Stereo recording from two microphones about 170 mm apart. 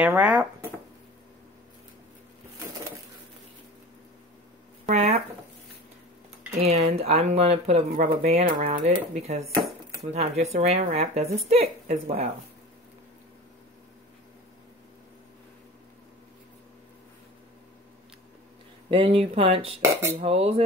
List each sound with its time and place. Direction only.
0.0 s speech: 5° right (ahead or behind)
4.8 s speech: 40° right (ahead or behind)
6.6 s speech: 35° right (ahead or behind)
18.9 s speech: 30° right (ahead or behind)